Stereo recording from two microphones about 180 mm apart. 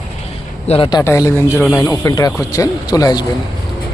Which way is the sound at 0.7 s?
25° left (ahead or behind).